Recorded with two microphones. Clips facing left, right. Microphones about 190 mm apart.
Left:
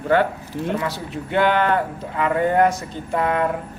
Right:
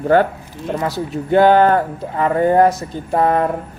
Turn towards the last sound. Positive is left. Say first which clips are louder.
# right 5 dB
turn(degrees=-40)  # may be behind; listen again after turning